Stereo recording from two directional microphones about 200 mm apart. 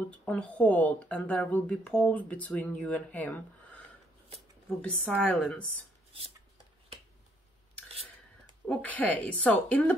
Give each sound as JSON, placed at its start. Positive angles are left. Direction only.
{"t": 0.1, "sound": "speech", "side_deg": 5}
{"t": 8.6, "sound": "speech", "side_deg": 10}